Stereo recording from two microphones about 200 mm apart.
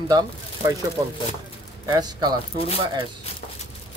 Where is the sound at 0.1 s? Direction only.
20° right (ahead or behind).